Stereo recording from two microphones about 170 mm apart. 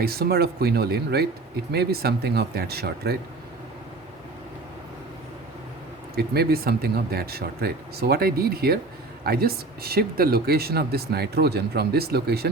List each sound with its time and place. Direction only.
0.0 s speech: 65° right (ahead or behind)
6.1 s speech: 65° right (ahead or behind)